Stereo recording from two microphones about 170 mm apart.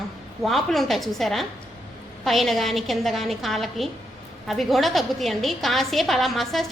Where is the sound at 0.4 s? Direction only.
Centre (ahead or behind).